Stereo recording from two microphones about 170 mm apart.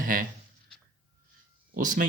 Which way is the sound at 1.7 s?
50° right (ahead or behind).